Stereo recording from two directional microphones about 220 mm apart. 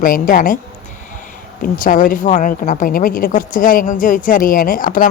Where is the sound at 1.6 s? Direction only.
40° left (ahead or behind).